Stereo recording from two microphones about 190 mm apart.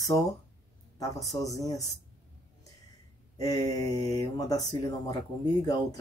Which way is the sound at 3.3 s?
20° left (ahead or behind).